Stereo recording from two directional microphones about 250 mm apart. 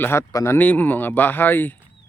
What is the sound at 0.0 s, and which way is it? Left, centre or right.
Speech, centre.